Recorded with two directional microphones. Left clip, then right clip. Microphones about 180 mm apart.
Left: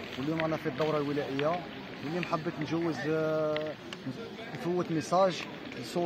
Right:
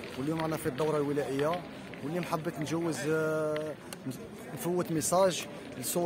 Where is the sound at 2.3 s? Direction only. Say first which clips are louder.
Left 1 dB; 35° right (ahead or behind).